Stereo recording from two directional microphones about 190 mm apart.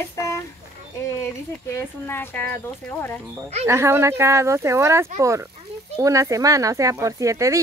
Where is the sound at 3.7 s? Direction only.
15° right (ahead or behind).